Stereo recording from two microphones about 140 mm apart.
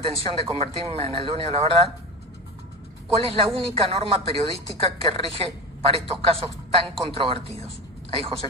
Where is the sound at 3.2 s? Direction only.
40° right (ahead or behind).